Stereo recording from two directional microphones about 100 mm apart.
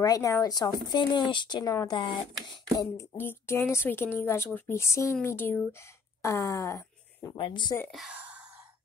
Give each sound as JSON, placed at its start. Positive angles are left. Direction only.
{"t": 0.0, "sound": "speech", "side_deg": 35}
{"t": 3.2, "sound": "a woman's voice", "side_deg": 25}
{"t": 6.2, "sound": "a sound", "side_deg": 30}
{"t": 7.3, "sound": "a woman's voice", "side_deg": 55}